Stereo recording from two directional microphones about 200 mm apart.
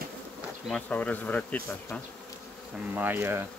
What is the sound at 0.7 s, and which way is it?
Speech, 5° left (ahead or behind).